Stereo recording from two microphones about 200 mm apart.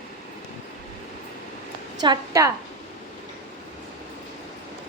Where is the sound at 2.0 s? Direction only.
20° right (ahead or behind).